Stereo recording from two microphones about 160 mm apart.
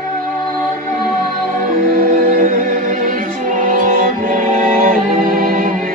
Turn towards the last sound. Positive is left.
turn(degrees=-60)  # may be behind; listen again after turning